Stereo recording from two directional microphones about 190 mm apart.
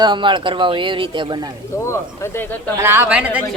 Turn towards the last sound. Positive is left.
turn(degrees=-5)  # may be behind; listen again after turning